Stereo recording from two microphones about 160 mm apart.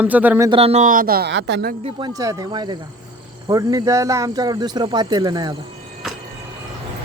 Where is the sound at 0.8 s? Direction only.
65° right (ahead or behind); by 1.8 s 80° right.